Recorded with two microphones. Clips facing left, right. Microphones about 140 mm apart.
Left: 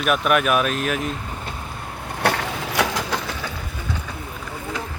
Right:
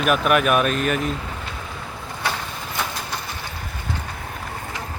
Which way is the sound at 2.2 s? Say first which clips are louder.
Left 6 dB; 80° left.